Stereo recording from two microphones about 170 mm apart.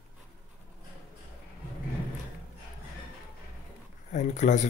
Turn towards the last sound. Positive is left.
turn(degrees=45)  # may be behind; listen again after turning